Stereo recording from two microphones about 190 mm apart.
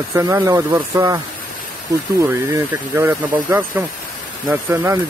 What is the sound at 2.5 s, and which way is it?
Speech, 15° right (ahead or behind).